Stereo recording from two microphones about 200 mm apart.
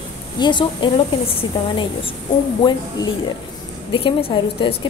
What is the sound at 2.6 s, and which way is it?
Speech, 25° left (ahead or behind).